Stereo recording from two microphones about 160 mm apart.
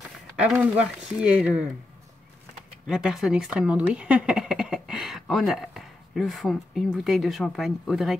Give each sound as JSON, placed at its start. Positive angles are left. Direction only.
{"t": 0.4, "sound": "speech", "side_deg": -10}
{"t": 2.9, "sound": "speech", "side_deg": 0}